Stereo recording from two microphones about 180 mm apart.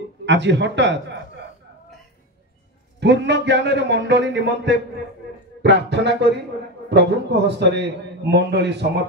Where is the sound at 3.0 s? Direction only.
70° right (ahead or behind).